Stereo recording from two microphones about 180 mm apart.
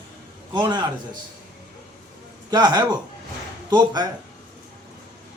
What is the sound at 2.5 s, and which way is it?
Speech, 25° right (ahead or behind).